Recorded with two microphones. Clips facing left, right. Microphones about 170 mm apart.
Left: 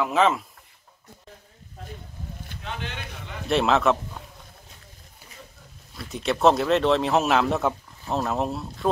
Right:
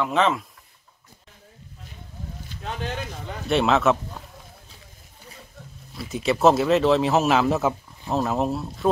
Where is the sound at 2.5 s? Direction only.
55° left (ahead or behind).